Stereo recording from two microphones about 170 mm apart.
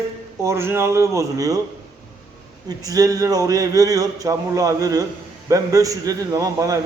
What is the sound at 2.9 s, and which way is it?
A man's voice, 20° right (ahead or behind).